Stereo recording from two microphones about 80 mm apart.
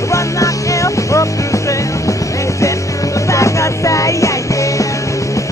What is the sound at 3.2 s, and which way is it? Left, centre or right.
Music, left.